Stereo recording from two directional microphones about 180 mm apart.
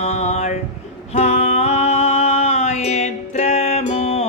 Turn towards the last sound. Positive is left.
turn(degrees=35)  # may be behind; listen again after turning